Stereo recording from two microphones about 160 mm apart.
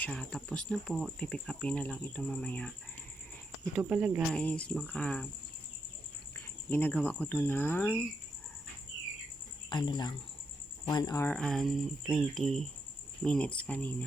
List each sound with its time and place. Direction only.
0.0 s speech: 5° left (ahead or behind)
3.8 s speech: 5° right (ahead or behind)
4.3 s speech: 5° left (ahead or behind)
6.7 s speech: 10° left (ahead or behind)
9.6 s speech: 30° left (ahead or behind)
11.3 s speech: 5° left (ahead or behind)